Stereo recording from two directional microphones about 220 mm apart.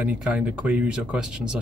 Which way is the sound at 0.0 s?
5° right (ahead or behind).